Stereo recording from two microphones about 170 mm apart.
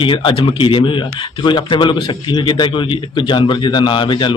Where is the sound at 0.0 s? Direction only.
30° left (ahead or behind).